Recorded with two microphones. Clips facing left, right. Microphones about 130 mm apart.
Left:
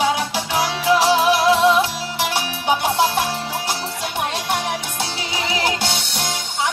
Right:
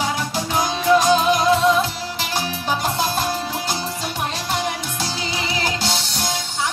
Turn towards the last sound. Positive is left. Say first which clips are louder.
# even
turn(degrees=60)  # may be behind; listen again after turning